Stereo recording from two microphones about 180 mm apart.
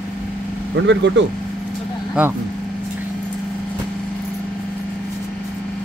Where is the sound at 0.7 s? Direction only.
85° right.